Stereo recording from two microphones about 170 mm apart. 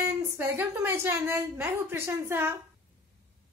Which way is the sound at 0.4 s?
15° right (ahead or behind).